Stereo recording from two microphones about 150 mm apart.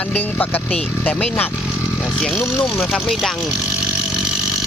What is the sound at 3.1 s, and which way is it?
Speech, centre (ahead or behind).